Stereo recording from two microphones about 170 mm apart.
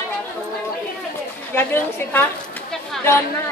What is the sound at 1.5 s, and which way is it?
Speech, 15° left (ahead or behind).